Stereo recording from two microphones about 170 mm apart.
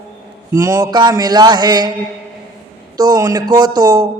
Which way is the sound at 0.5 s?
20° right (ahead or behind).